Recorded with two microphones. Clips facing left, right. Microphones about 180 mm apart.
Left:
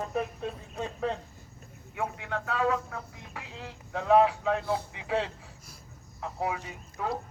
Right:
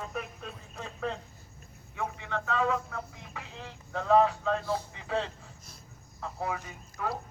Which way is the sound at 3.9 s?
10° left (ahead or behind).